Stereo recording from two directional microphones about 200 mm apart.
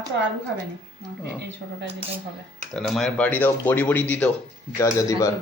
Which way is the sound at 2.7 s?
Centre (ahead or behind).